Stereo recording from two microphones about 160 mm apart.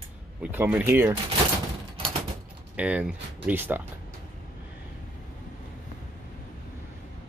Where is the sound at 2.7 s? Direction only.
10° right (ahead or behind).